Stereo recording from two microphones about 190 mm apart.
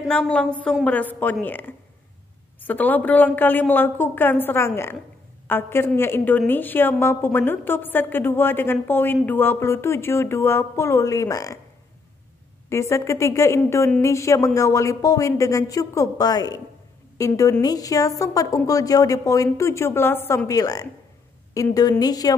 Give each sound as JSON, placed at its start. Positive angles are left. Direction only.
{"t": 0.0, "sound": "a woman's voice", "side_deg": 5}
{"t": 12.6, "sound": "a woman's voice", "side_deg": 15}